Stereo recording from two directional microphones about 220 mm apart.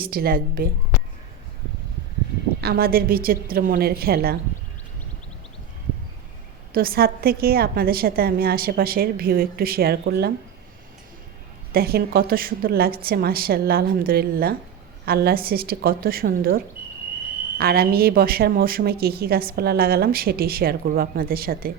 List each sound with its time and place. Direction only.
0.0 s a woman's voice: 40° right (ahead or behind)
2.6 s speech: 45° right (ahead or behind)
6.7 s speech: 40° right (ahead or behind)
11.7 s speech: 45° right (ahead or behind)